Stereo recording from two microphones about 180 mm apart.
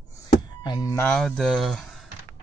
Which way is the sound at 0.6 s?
20° left (ahead or behind).